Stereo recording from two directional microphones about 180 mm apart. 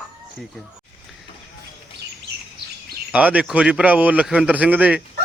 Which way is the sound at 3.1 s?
10° right (ahead or behind).